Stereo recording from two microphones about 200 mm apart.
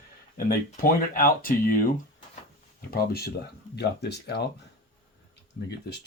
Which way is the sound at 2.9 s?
50° left (ahead or behind).